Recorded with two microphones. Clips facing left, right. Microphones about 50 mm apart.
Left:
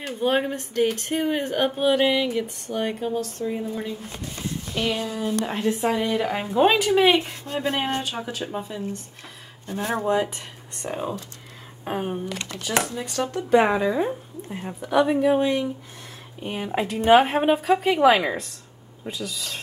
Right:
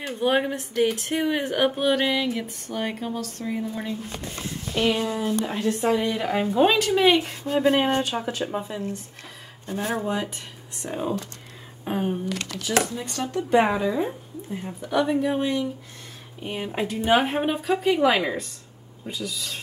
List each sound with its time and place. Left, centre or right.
0.1 s speech: centre
4.7 s speech: centre
5.4 s speech: centre
7.4 s speech: centre
9.7 s a woman's voice: centre
12.4 s speech: left
13.0 s a woman's voice: centre
14.8 s a woman's voice: centre
17.1 s a woman's voice: centre